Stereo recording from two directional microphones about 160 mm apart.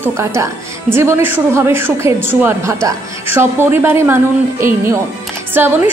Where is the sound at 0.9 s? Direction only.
15° right (ahead or behind).